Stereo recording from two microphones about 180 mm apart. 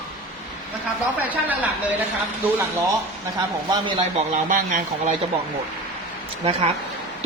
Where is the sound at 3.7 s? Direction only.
30° right (ahead or behind).